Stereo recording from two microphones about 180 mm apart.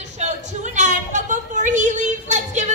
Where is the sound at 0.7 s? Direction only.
45° right (ahead or behind).